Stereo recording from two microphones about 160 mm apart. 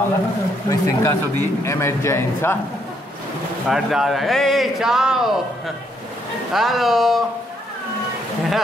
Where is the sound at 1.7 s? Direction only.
15° left (ahead or behind).